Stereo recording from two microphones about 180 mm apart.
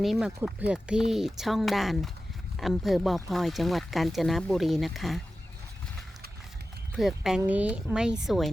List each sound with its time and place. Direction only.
0.0 s speech: centre (ahead or behind)
6.9 s speech: 5° right (ahead or behind)